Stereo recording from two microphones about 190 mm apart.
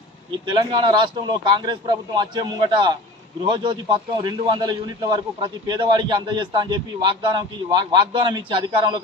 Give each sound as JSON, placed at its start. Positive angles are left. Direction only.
{"t": 0.5, "sound": "a man's voice", "side_deg": -25}